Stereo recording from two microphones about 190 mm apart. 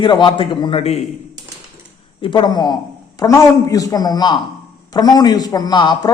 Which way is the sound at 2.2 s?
25° left (ahead or behind).